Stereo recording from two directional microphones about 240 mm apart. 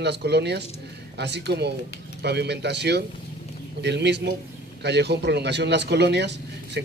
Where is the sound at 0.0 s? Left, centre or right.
Right.